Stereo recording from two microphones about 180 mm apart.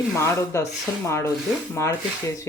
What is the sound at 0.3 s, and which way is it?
Speech, 15° left (ahead or behind).